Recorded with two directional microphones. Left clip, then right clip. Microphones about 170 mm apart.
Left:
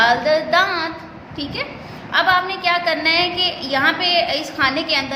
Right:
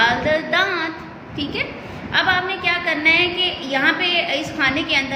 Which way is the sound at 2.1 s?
30° left (ahead or behind).